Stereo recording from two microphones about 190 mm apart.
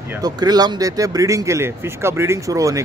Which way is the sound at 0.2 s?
20° right (ahead or behind).